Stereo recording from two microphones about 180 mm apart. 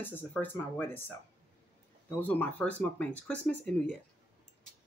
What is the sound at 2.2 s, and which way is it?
Speech, 10° left (ahead or behind).